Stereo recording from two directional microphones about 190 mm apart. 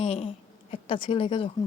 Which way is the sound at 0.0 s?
30° left (ahead or behind).